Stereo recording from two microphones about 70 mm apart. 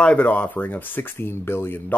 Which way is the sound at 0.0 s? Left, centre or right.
Centre.